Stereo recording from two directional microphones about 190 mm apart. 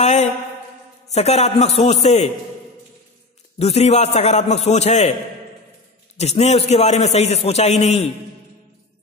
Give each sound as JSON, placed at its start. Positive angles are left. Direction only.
{"t": 0.0, "sound": "a man's voice", "side_deg": 35}
{"t": 3.5, "sound": "a man's voice", "side_deg": 35}
{"t": 6.1, "sound": "a man's voice", "side_deg": 35}